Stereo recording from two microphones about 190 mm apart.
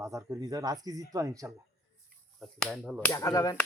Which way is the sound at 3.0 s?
15° left (ahead or behind).